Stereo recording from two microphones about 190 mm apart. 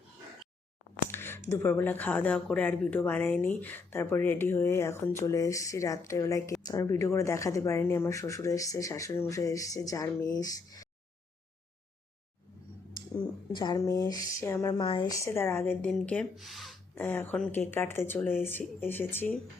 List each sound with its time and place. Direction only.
1.1 s speech: 10° left (ahead or behind)
13.5 s speech: 20° left (ahead or behind); by 16.7 s centre (ahead or behind)
16.9 s speech: 10° left (ahead or behind)